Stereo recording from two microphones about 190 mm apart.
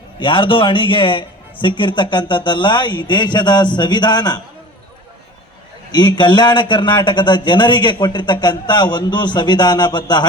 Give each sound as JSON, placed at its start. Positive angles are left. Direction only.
{"t": 0.2, "sound": "a man's voice", "side_deg": 25}
{"t": 5.9, "sound": "a man's voice", "side_deg": 20}